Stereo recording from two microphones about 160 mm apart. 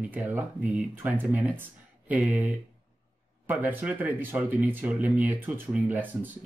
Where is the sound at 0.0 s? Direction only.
10° right (ahead or behind).